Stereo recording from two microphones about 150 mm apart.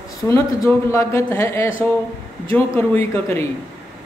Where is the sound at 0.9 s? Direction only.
20° left (ahead or behind).